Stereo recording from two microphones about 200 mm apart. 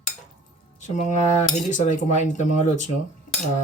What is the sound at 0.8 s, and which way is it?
Speech, 35° left (ahead or behind).